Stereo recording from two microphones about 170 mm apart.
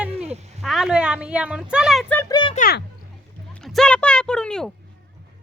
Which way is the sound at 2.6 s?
60° left (ahead or behind).